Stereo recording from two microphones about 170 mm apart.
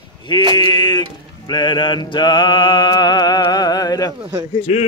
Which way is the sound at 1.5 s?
25° left (ahead or behind).